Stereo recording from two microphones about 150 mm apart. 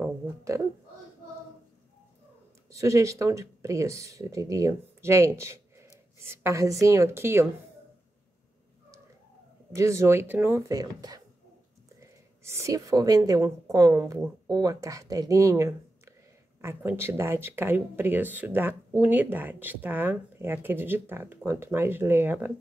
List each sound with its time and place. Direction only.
0.0 s a sound: 20° right (ahead or behind)
2.7 s speech: 20° right (ahead or behind)
9.8 s a woman's voice: 20° right (ahead or behind)